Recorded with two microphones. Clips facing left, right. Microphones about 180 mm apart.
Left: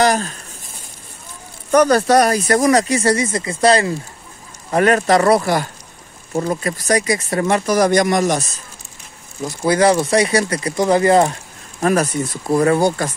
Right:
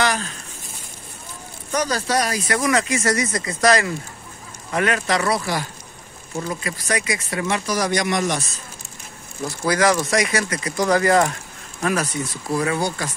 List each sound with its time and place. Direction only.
0.0 s speech: 45° left (ahead or behind)
1.7 s speech: 60° left (ahead or behind); by 3.9 s 30° left (ahead or behind)
4.6 s speech: 40° left (ahead or behind)
9.6 s speech: 30° left (ahead or behind)
11.8 s speech: 45° left (ahead or behind)